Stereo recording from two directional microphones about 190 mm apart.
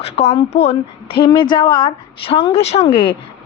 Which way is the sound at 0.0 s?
35° left (ahead or behind).